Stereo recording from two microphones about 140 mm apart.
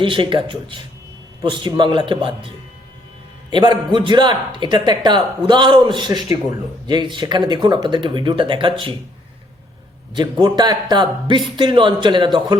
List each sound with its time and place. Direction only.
0.0 s a man's voice: 35° right (ahead or behind)
3.5 s a man's voice: 30° right (ahead or behind)
10.2 s a man's voice: 35° right (ahead or behind)